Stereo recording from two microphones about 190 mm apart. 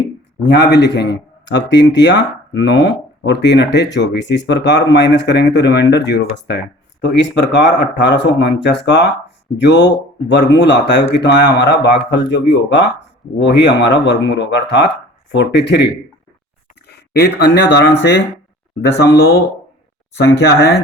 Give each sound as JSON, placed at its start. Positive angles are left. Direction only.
{"t": 0.4, "sound": "a man's voice", "side_deg": 65}
{"t": 16.9, "sound": "speech", "side_deg": 60}